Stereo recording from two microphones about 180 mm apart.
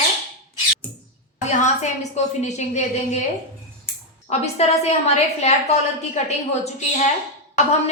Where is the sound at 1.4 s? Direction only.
40° left (ahead or behind).